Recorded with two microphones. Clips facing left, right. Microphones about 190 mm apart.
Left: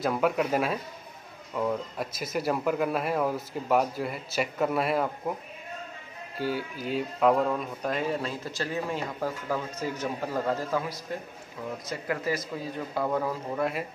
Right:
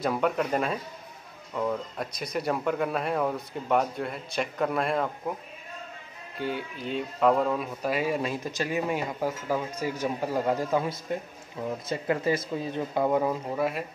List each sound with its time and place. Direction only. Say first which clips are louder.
0.0 s speech: even; centre (ahead or behind)
6.4 s speech: left 1 dB; 5° left (ahead or behind); by 13.4 s 20° right (ahead or behind)
13.6 s speech: left 1 dB; centre (ahead or behind)